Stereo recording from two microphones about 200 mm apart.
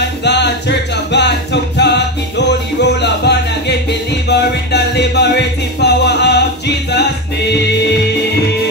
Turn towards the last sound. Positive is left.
turn(degrees=55)  # may be behind; listen again after turning